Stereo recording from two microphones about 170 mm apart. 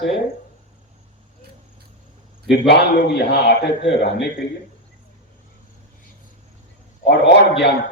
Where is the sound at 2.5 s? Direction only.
80° left.